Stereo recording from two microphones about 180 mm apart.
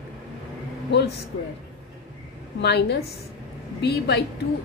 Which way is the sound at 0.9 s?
70° left (ahead or behind).